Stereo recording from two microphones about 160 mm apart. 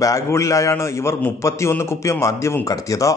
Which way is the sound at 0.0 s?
20° left (ahead or behind).